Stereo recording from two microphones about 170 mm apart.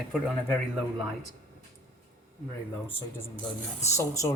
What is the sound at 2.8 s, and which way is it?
Speech, 10° left (ahead or behind).